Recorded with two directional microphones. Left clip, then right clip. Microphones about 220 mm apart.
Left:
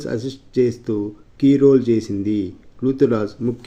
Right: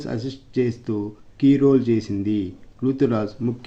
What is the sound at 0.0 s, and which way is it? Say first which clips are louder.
Speech: left 4 dB; 10° left (ahead or behind).